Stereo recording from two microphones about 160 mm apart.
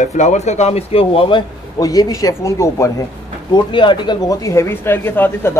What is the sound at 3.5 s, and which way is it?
Speech, 30° left (ahead or behind).